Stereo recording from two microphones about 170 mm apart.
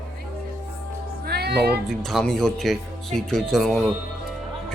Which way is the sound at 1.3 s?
70° right (ahead or behind).